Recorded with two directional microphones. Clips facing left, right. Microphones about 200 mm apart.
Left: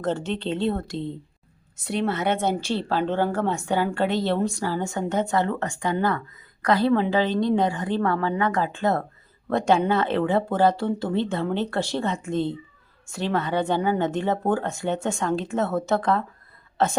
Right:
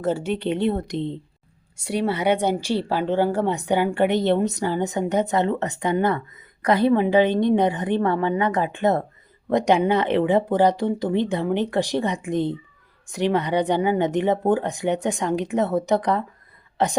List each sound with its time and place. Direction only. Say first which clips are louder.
0.0 s a woman's voice: right 3 dB; 10° right (ahead or behind)